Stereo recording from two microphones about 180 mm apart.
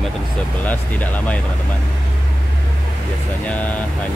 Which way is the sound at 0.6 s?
10° left (ahead or behind).